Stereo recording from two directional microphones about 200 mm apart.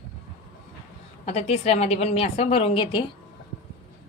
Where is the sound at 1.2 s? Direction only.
30° left (ahead or behind).